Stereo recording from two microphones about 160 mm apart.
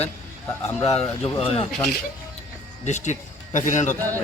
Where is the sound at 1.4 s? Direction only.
35° left (ahead or behind).